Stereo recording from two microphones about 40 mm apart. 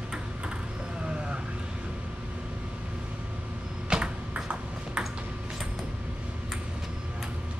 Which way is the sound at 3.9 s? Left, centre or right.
Right.